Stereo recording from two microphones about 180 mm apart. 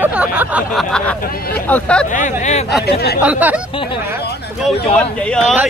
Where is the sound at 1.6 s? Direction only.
5° left (ahead or behind).